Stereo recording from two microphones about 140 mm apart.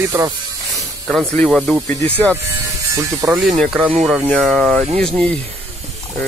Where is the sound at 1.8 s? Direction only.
15° left (ahead or behind).